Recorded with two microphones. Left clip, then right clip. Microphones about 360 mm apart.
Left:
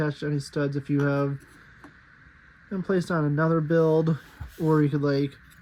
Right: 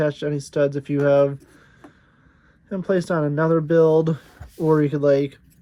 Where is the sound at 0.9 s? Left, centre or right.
Right.